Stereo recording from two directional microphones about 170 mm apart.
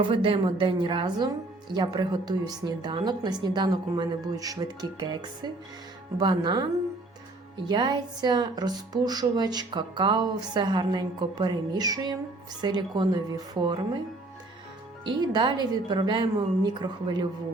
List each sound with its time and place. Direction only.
0.0 s speech: 30° right (ahead or behind)
7.7 s speech: 25° right (ahead or behind)
15.0 s speech: 25° right (ahead or behind)